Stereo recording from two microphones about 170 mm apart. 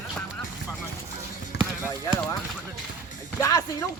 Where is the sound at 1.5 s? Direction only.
80° left.